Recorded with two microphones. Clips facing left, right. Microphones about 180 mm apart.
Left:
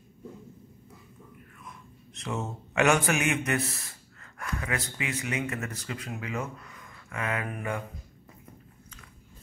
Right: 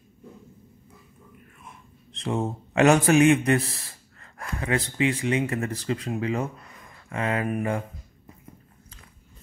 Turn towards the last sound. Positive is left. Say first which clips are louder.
# right 6 dB
turn(degrees=-25)  # may be behind; listen again after turning